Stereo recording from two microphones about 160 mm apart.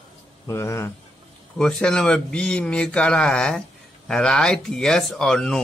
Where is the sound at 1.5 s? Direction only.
5° left (ahead or behind).